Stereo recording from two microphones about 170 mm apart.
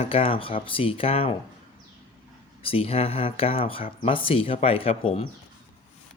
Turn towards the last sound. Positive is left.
turn(degrees=35)  # may be behind; listen again after turning